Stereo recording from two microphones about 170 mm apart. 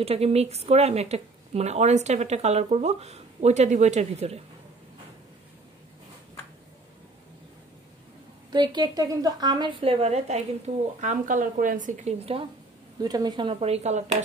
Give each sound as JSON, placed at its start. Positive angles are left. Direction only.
{"t": 0.0, "sound": "speech", "side_deg": -35}
{"t": 8.5, "sound": "a woman's voice", "side_deg": -25}
{"t": 13.0, "sound": "speech", "side_deg": -25}